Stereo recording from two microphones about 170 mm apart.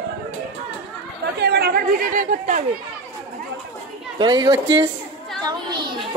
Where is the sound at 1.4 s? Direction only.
70° right (ahead or behind); by 2.6 s 50° right (ahead or behind).